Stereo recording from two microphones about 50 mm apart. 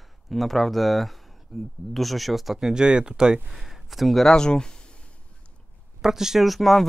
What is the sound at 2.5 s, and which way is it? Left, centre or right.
Speech, centre.